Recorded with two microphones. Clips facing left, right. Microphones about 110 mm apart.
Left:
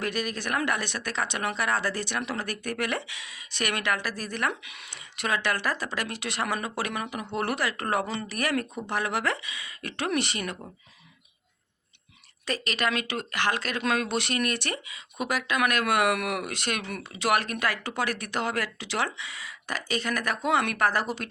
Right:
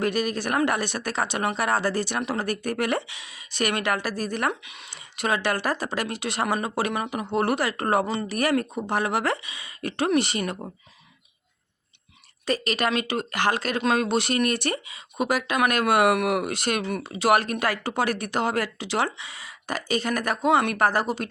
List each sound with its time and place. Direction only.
0.0 s speech: 40° right (ahead or behind)
4.6 s speech: 25° right (ahead or behind)
5.2 s speech: 35° right (ahead or behind)
12.5 s speech: 40° right (ahead or behind)